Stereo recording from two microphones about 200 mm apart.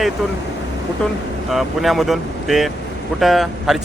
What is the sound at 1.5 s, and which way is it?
Speech, centre (ahead or behind).